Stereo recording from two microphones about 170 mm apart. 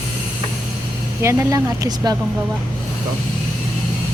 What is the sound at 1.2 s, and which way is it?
Speech, 20° right (ahead or behind).